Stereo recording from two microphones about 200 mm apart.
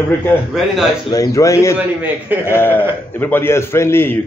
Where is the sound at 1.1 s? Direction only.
15° left (ahead or behind).